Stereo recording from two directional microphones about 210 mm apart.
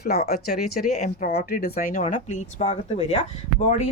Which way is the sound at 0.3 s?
45° left (ahead or behind).